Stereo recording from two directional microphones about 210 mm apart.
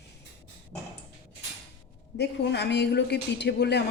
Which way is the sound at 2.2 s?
55° left (ahead or behind).